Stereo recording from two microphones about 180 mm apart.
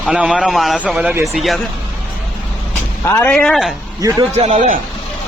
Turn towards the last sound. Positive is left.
turn(degrees=-45)  # may be behind; listen again after turning